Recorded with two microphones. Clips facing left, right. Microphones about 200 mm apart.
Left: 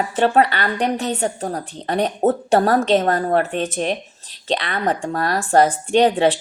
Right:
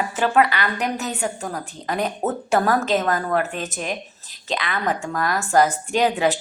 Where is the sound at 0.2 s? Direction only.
35° left (ahead or behind).